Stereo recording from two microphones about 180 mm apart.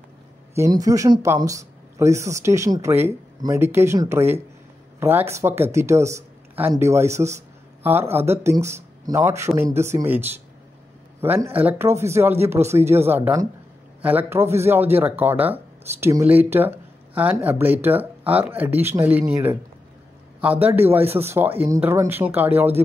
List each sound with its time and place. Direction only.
0.6 s speech: 20° right (ahead or behind)